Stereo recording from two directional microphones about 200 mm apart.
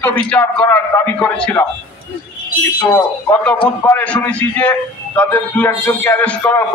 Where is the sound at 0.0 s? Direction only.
10° left (ahead or behind).